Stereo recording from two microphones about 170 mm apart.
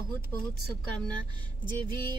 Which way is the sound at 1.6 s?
25° right (ahead or behind).